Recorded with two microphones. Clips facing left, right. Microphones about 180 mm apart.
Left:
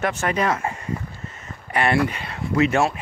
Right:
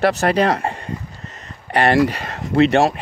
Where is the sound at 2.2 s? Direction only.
40° right (ahead or behind).